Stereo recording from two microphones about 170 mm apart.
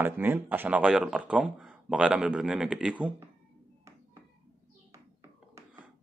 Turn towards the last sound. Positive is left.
turn(degrees=-15)  # may be behind; listen again after turning